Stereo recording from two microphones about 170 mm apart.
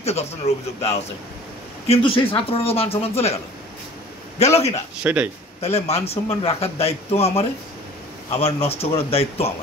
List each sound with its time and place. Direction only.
0.0 s a man's voice: 40° left (ahead or behind)
1.9 s a man's voice: 30° left (ahead or behind)
4.4 s a man's voice: 40° left (ahead or behind)
5.0 s a man's voice: 10° right (ahead or behind)
5.6 s a man's voice: 40° left (ahead or behind)